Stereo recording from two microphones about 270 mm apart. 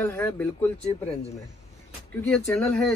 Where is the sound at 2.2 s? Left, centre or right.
Centre.